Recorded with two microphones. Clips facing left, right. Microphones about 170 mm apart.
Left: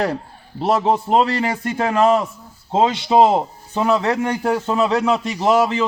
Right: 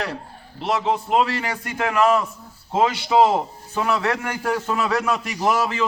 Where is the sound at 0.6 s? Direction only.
40° left (ahead or behind).